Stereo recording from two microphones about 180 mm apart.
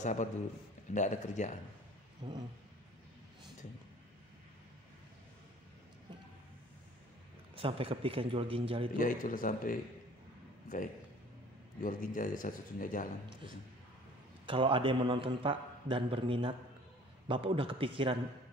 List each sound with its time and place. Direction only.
0.0 s speech: 45° left (ahead or behind)
2.2 s a man's voice: 30° right (ahead or behind)
7.5 s a man's voice: 30° right (ahead or behind)
8.9 s speech: 50° left (ahead or behind)
11.8 s speech: 50° left (ahead or behind)
14.4 s a man's voice: 30° right (ahead or behind)